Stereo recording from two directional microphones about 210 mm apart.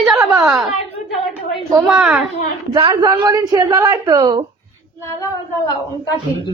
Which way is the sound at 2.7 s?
20° right (ahead or behind).